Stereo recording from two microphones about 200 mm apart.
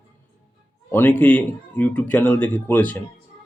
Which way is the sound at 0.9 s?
10° left (ahead or behind).